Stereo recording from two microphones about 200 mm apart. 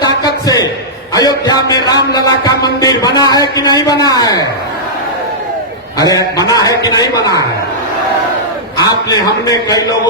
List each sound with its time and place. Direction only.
0.2 s a sound: 20° left (ahead or behind)
1.1 s a man's voice: 20° left (ahead or behind)
6.0 s a man's voice: 20° left (ahead or behind)
8.8 s a man's voice: 20° left (ahead or behind)